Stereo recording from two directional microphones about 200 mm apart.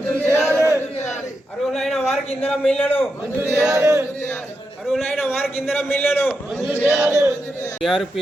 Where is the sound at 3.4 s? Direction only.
10° right (ahead or behind).